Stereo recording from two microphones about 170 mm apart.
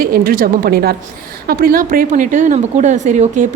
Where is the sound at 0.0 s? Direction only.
60° right (ahead or behind).